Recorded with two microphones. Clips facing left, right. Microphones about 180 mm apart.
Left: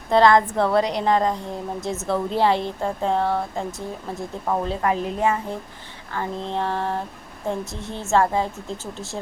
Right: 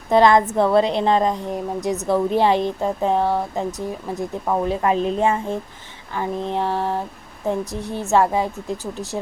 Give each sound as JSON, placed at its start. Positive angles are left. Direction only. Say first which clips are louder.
{"t": 0.1, "sound": "a woman's voice", "louder": "right 2 dB", "side_deg": -20}
{"t": 6.1, "sound": "a woman's voice", "louder": "right 3 dB", "side_deg": -15}